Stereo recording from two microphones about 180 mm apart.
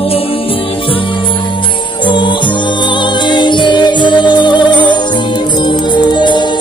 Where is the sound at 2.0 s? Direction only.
25° left (ahead or behind).